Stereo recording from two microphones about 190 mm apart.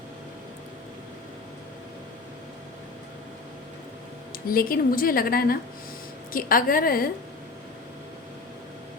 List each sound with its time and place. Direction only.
4.4 s a woman's voice: 50° left (ahead or behind)